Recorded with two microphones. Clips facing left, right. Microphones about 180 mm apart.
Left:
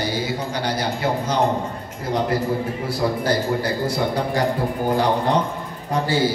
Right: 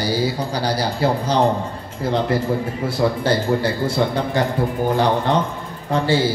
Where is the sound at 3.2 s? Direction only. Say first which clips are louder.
Right 2 dB; 25° right (ahead or behind).